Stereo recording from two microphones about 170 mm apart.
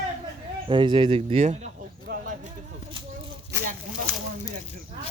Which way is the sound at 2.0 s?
60° right (ahead or behind).